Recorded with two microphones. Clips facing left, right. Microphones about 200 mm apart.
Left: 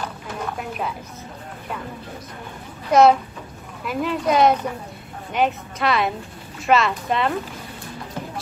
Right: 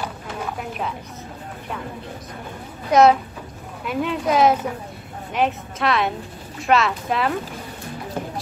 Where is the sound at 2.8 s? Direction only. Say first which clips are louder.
Even; centre (ahead or behind).